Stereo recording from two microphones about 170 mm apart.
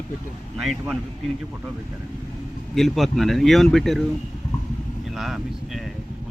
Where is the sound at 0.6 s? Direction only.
Centre (ahead or behind).